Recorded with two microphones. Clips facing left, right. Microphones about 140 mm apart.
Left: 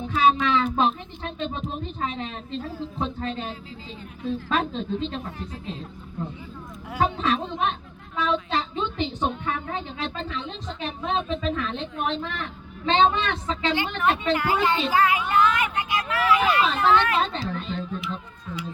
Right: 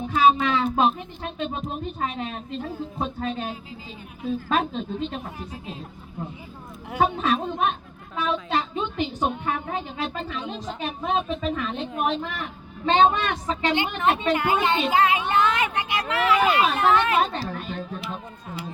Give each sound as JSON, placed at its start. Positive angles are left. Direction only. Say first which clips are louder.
{"t": 0.2, "sound": "speech", "louder": "right 1 dB", "side_deg": -10}
{"t": 7.0, "sound": "speech", "louder": "right 1 dB", "side_deg": -10}
{"t": 8.2, "sound": "a sound", "louder": "even", "side_deg": -10}
{"t": 9.2, "sound": "a woman's voice", "louder": "right 2 dB", "side_deg": -15}